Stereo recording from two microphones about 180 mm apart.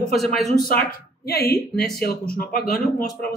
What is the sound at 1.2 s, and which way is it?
Speech, 60° left (ahead or behind).